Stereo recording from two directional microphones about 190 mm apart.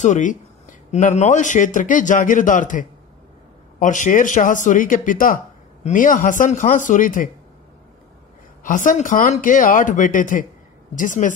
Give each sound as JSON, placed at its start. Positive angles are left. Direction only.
{"t": 0.0, "sound": "speech", "side_deg": 40}
{"t": 8.6, "sound": "speech", "side_deg": 45}